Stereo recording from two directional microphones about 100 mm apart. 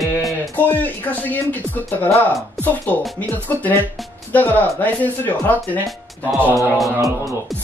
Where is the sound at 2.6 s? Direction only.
15° left (ahead or behind).